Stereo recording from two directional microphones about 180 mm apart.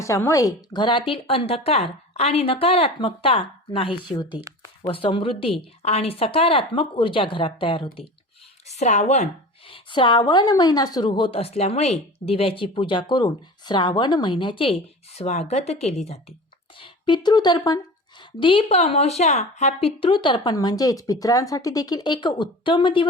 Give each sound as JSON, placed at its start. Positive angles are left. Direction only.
{"t": 0.0, "sound": "a woman's voice", "side_deg": 15}
{"t": 4.3, "sound": "speech", "side_deg": -10}
{"t": 4.8, "sound": "a woman's voice", "side_deg": 30}